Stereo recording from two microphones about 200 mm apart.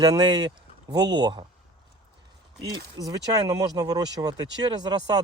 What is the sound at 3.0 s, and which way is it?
Speech, 15° right (ahead or behind).